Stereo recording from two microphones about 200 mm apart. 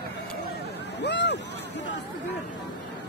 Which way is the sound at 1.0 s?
60° left (ahead or behind).